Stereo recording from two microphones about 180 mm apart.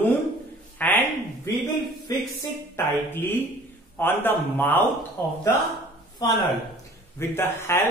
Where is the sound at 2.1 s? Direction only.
20° left (ahead or behind).